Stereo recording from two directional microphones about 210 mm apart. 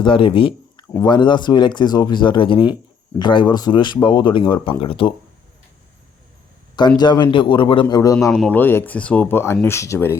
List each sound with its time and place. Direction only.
0.0 s speech: 25° left (ahead or behind)
6.7 s speech: 20° left (ahead or behind)